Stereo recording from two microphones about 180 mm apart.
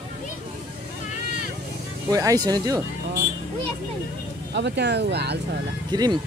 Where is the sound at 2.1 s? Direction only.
20° right (ahead or behind).